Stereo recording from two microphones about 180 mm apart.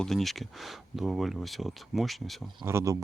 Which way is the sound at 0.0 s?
Centre (ahead or behind).